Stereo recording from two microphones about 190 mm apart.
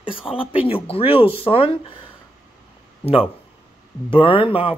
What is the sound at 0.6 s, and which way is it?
Speech, 30° left (ahead or behind).